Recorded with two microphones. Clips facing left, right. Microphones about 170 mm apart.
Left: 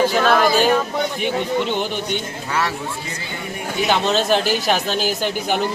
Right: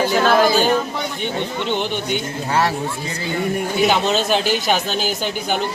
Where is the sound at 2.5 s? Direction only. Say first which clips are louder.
Right 4 dB; 35° right (ahead or behind).